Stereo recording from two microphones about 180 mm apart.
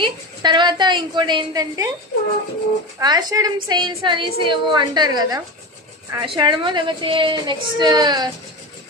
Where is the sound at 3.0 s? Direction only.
20° right (ahead or behind).